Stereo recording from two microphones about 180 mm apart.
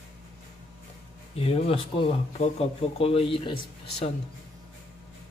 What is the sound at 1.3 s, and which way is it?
Speech, 30° left (ahead or behind).